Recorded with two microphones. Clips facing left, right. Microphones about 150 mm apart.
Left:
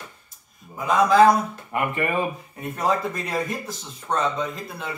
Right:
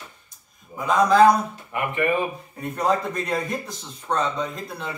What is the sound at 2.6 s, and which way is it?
A man's voice, centre (ahead or behind).